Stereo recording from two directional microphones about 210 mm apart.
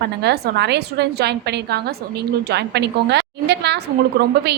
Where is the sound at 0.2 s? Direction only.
50° right (ahead or behind).